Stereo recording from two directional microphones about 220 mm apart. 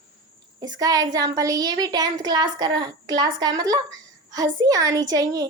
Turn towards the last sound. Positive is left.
turn(degrees=-15)  # may be behind; listen again after turning